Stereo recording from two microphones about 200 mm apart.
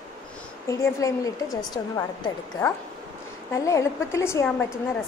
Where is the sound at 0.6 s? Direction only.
15° left (ahead or behind).